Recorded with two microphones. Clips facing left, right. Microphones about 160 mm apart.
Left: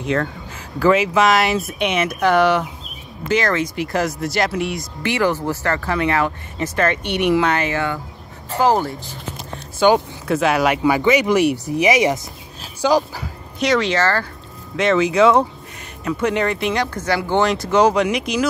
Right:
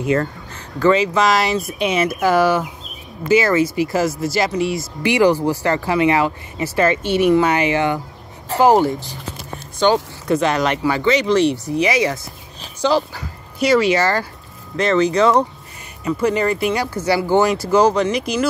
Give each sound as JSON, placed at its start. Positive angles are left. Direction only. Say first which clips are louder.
{"t": 0.0, "sound": "speech", "louder": "right 3 dB", "side_deg": -5}
{"t": 0.7, "sound": "speech", "louder": "even", "side_deg": 5}
{"t": 5.0, "sound": "speech", "louder": "right 5 dB", "side_deg": -15}
{"t": 7.5, "sound": "speech", "louder": "right 4 dB", "side_deg": -15}
{"t": 9.8, "sound": "speech", "louder": "left 1 dB", "side_deg": 10}
{"t": 13.6, "sound": "speech", "louder": "right 3 dB", "side_deg": -5}
{"t": 14.8, "sound": "speech", "louder": "even", "side_deg": 5}